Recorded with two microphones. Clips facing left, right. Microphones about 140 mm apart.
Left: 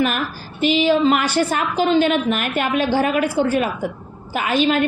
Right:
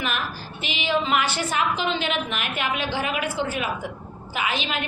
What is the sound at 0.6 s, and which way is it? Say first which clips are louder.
A woman's voice: left 10 dB; 40° left (ahead or behind).